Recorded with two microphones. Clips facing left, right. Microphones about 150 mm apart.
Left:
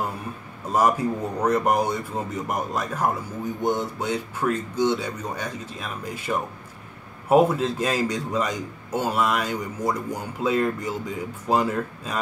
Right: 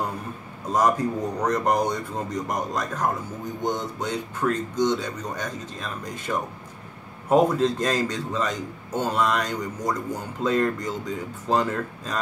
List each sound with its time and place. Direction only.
0.7 s a man's voice: 10° left (ahead or behind)